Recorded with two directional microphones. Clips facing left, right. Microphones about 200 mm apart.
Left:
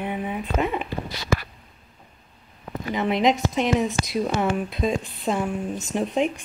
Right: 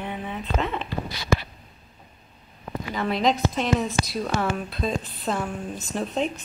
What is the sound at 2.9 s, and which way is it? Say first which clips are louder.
A woman's voice: left 3 dB; 20° left (ahead or behind).